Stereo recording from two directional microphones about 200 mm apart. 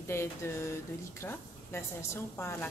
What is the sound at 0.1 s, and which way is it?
A woman's voice, 10° left (ahead or behind).